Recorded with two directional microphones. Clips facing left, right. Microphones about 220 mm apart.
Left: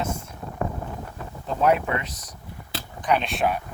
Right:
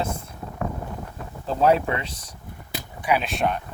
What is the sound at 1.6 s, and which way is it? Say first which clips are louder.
Speech: right 2 dB; 30° right (ahead or behind).